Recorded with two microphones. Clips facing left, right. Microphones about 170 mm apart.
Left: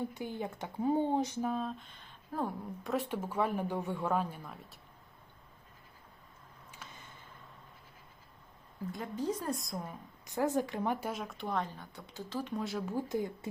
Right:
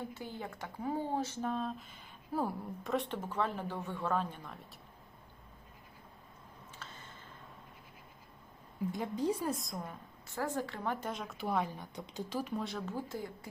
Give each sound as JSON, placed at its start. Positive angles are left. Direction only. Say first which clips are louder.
{"t": 0.0, "sound": "speech", "louder": "left 5 dB", "side_deg": 15}
{"t": 6.7, "sound": "a sound", "louder": "even", "side_deg": 15}
{"t": 9.0, "sound": "a woman's voice", "louder": "right 1 dB", "side_deg": -10}
{"t": 10.2, "sound": "speech", "louder": "left 5 dB", "side_deg": 20}
{"t": 11.1, "sound": "speech", "louder": "right 1 dB", "side_deg": 0}
{"t": 12.5, "sound": "a woman's voice", "louder": "left 2 dB", "side_deg": 5}
{"t": 12.9, "sound": "speech", "louder": "left 5 dB", "side_deg": 15}